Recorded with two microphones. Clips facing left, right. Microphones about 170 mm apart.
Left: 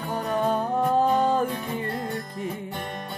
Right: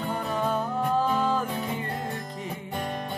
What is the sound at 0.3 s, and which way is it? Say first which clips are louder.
Music: left 5 dB; 55° left (ahead or behind).